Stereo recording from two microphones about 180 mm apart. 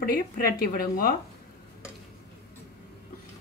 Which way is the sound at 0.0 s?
55° left (ahead or behind).